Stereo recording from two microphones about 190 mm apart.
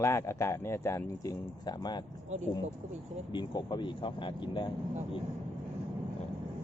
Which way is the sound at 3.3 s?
25° left (ahead or behind).